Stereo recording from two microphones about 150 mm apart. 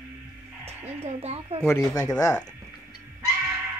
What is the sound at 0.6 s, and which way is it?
Speech, 45° right (ahead or behind).